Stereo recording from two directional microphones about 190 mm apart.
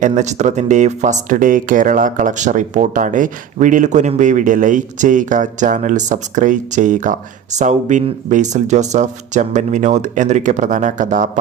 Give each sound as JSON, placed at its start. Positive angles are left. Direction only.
{"t": 0.1, "sound": "speech", "side_deg": -35}